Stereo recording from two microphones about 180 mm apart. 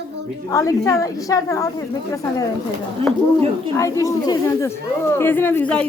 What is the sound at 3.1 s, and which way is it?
Speech, centre (ahead or behind).